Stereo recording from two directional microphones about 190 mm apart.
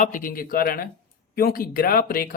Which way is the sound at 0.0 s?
45° left (ahead or behind).